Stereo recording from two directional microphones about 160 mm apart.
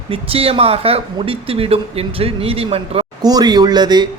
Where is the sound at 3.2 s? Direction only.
25° right (ahead or behind).